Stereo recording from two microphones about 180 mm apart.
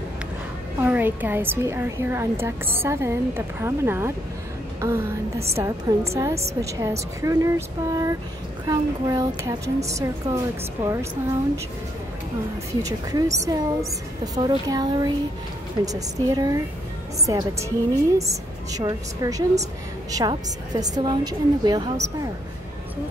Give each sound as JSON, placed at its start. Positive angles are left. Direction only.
{"t": 0.7, "sound": "a woman's voice", "side_deg": -10}
{"t": 12.8, "sound": "a woman's voice", "side_deg": -20}